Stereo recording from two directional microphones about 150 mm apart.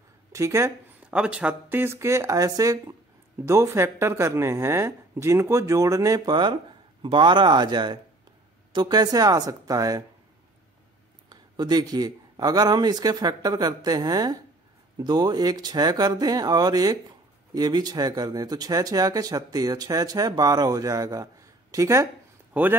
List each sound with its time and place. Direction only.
0.3 s speech: 20° right (ahead or behind)
1.1 s speech: 5° right (ahead or behind); by 10.0 s 25° right (ahead or behind)
11.2 s speech: 30° right (ahead or behind); by 22.8 s 10° right (ahead or behind)